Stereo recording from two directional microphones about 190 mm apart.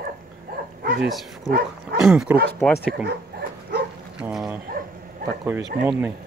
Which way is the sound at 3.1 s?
55° right (ahead or behind).